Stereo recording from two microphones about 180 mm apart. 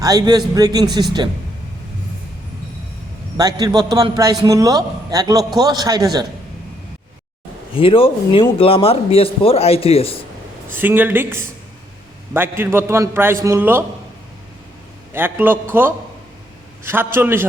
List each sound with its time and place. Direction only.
0.0 s a man's voice: 20° right (ahead or behind)
3.3 s a man's voice: 20° right (ahead or behind)
7.7 s speech: 30° left (ahead or behind)
10.7 s a man's voice: 10° right (ahead or behind)
15.1 s a man's voice: 10° right (ahead or behind)